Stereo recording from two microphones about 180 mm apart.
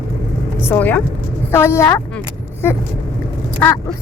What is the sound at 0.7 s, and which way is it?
A woman's voice, 10° left (ahead or behind).